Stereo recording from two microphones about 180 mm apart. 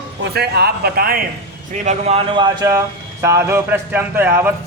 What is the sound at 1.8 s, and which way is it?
Speech, 35° right (ahead or behind).